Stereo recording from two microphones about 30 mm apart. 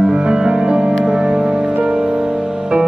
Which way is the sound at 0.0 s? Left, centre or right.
Right.